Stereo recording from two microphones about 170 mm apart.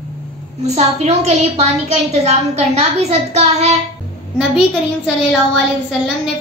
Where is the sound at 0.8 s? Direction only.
40° right (ahead or behind).